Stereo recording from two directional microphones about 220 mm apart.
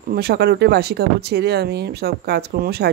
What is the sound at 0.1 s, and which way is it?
Speech, 45° right (ahead or behind).